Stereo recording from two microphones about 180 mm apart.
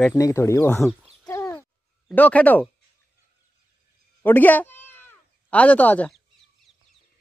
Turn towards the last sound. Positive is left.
turn(degrees=10)  # may be behind; listen again after turning